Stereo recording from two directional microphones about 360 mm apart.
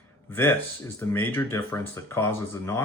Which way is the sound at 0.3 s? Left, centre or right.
Centre.